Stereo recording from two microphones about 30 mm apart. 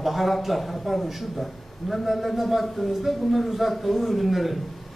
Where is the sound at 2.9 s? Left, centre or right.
Centre.